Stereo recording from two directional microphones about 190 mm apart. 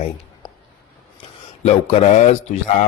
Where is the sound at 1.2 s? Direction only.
35° left (ahead or behind).